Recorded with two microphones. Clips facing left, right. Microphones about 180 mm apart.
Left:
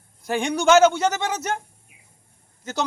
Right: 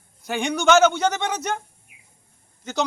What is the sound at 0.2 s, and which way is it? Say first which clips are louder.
Speech: left 1 dB; 30° left (ahead or behind).